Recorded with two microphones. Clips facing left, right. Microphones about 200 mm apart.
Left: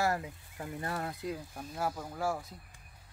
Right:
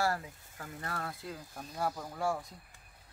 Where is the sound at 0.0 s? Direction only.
20° left (ahead or behind).